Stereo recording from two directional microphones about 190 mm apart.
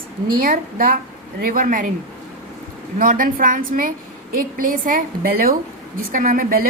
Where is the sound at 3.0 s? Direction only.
45° right (ahead or behind).